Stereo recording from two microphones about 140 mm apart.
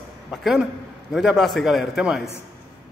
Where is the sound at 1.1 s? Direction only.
Centre (ahead or behind).